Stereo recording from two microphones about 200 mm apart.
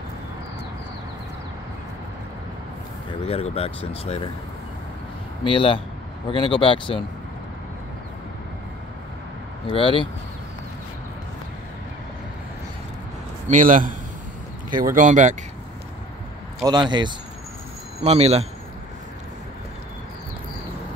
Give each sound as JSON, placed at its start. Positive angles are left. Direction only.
{"t": 3.1, "sound": "speech", "side_deg": 30}
{"t": 5.4, "sound": "speech", "side_deg": 25}
{"t": 9.7, "sound": "speech", "side_deg": 25}
{"t": 13.5, "sound": "speech", "side_deg": -40}
{"t": 16.6, "sound": "speech", "side_deg": -20}